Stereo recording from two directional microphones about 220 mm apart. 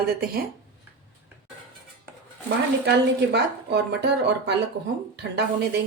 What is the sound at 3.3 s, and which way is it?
A woman's voice, 50° right (ahead or behind).